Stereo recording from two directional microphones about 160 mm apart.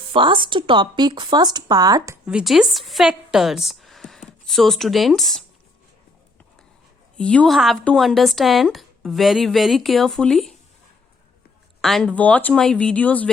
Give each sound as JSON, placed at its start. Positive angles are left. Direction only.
{"t": 0.1, "sound": "a woman's voice", "side_deg": -30}
{"t": 2.2, "sound": "a woman's voice", "side_deg": -5}
{"t": 7.2, "sound": "speech", "side_deg": 5}
{"t": 11.8, "sound": "speech", "side_deg": 0}